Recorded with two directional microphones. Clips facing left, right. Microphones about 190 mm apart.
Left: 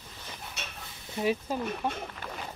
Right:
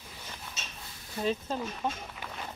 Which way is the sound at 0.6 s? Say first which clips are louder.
Left 3 dB; 60° left (ahead or behind).